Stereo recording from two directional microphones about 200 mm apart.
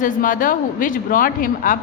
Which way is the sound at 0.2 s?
45° left (ahead or behind).